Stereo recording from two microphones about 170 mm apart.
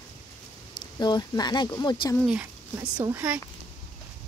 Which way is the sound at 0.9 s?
25° left (ahead or behind).